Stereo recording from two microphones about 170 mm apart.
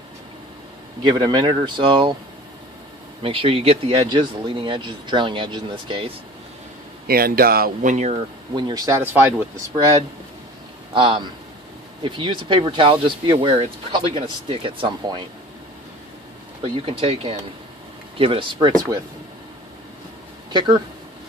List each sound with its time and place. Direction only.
1.0 s speech: 25° right (ahead or behind)
3.2 s speech: 35° right (ahead or behind)
7.1 s speech: 60° right (ahead or behind); by 8.2 s 45° right (ahead or behind)
8.5 s speech: 25° right (ahead or behind)
11.0 s speech: 30° right (ahead or behind)
16.6 s speech: 35° right (ahead or behind)
20.5 s speech: 25° right (ahead or behind)